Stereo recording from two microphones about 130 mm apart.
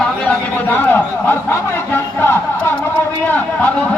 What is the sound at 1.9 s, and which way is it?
Crowd, 20° left (ahead or behind).